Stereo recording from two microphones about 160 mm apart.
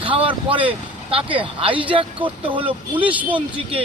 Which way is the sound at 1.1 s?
35° right (ahead or behind).